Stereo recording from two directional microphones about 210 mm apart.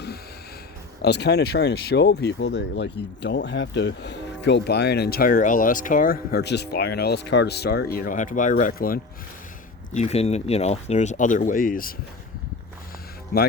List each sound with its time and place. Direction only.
1.0 s speech: 55° left (ahead or behind)
9.9 s speech: 30° left (ahead or behind)
13.3 s speech: 45° left (ahead or behind)